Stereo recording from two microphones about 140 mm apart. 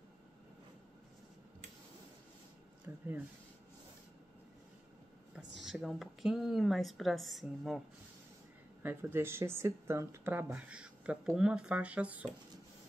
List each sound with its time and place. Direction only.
2.9 s a sound: 15° right (ahead or behind)
5.3 s speech: centre (ahead or behind)
8.8 s speech: 15° right (ahead or behind)